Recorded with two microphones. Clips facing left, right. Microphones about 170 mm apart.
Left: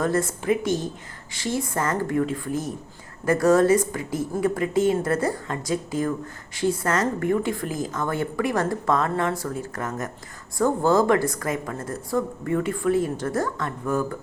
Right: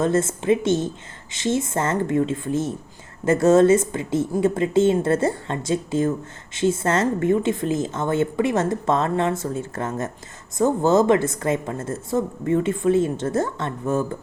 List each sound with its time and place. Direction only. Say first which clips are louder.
0.0 s a woman's voice: right 3 dB; 25° right (ahead or behind)